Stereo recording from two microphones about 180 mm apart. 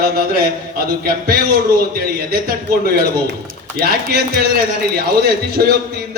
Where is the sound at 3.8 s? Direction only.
55° right (ahead or behind).